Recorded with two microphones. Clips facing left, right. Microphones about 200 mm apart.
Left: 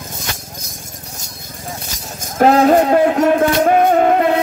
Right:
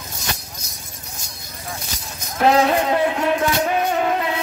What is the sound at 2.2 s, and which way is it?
Music, 50° left (ahead or behind).